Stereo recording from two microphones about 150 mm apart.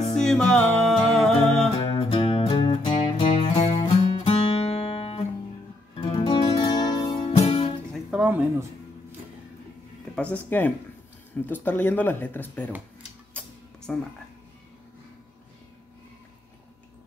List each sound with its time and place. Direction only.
0.1 s music: 5° left (ahead or behind)
1.8 s music: 35° left (ahead or behind)
7.4 s music: 40° left (ahead or behind)
8.2 s music: 10° right (ahead or behind)
10.3 s speech: 10° left (ahead or behind)
13.9 s speech: 5° left (ahead or behind)